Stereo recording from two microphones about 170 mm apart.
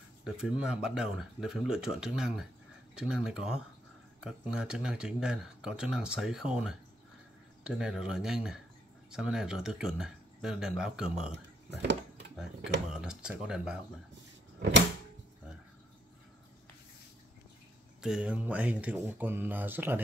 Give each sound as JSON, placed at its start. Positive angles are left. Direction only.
{"t": 0.2, "sound": "speech", "side_deg": -5}
{"t": 11.3, "sound": "speech", "side_deg": -90}
{"t": 12.9, "sound": "speech", "side_deg": -5}
{"t": 18.0, "sound": "speech", "side_deg": -5}